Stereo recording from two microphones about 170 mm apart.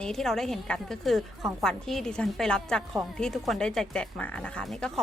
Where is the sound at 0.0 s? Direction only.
5° left (ahead or behind).